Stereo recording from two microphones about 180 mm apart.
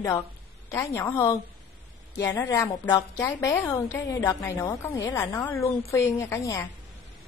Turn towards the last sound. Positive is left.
turn(degrees=15)  # may be behind; listen again after turning